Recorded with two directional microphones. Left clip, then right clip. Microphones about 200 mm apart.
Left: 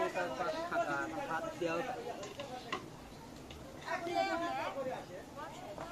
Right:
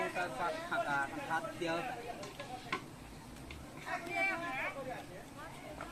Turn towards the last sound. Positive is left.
turn(degrees=45)  # may be behind; listen again after turning